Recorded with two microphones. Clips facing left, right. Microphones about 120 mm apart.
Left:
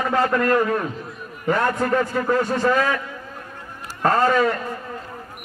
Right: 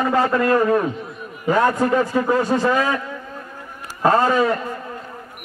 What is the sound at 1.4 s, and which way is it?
A man's voice, 15° right (ahead or behind).